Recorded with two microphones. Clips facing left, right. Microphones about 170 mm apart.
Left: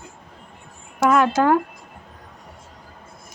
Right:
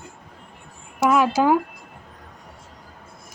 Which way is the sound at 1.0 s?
5° right (ahead or behind).